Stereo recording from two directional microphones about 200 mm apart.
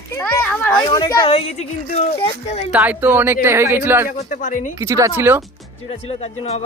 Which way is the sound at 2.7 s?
10° right (ahead or behind).